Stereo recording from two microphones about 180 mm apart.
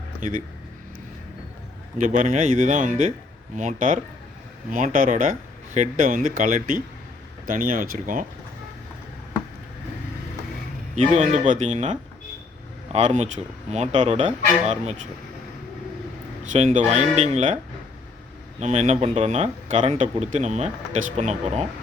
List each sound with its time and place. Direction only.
0.2 s speech: 45° right (ahead or behind)
2.0 s speech: 45° right (ahead or behind)
10.9 s speech: 40° right (ahead or behind)
16.4 s speech: 40° right (ahead or behind)
18.6 s speech: 35° right (ahead or behind)